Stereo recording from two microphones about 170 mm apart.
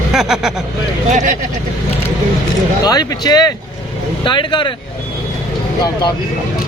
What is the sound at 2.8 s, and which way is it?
Speech, 25° left (ahead or behind).